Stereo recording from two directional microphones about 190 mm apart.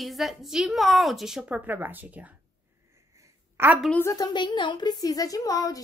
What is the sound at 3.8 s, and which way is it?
A woman's voice, 10° left (ahead or behind).